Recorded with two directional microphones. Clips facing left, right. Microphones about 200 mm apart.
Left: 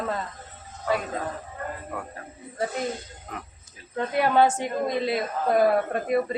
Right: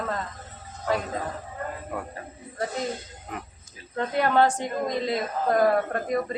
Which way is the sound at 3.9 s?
10° left (ahead or behind).